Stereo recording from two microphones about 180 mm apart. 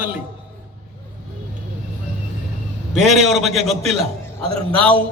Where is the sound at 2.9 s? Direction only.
Centre (ahead or behind).